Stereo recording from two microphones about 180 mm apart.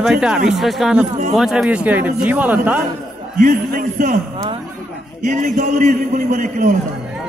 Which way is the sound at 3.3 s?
50° right (ahead or behind).